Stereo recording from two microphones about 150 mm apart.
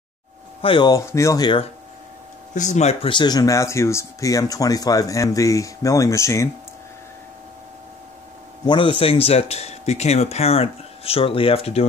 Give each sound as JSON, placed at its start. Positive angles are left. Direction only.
{"t": 0.6, "sound": "speech", "side_deg": 35}
{"t": 0.9, "sound": "speech", "side_deg": 20}
{"t": 2.5, "sound": "speech", "side_deg": 55}
{"t": 3.1, "sound": "speech", "side_deg": 30}
{"t": 8.6, "sound": "speech", "side_deg": 35}